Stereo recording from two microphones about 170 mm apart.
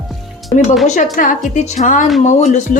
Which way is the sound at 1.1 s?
50° left (ahead or behind).